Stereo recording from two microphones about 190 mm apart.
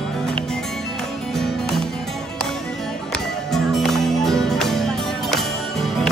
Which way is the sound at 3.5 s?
Centre (ahead or behind).